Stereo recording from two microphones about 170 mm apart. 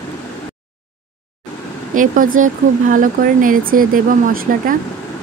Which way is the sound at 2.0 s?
50° right (ahead or behind).